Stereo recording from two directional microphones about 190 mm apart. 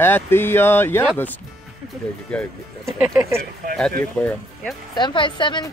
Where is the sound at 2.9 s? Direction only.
10° right (ahead or behind).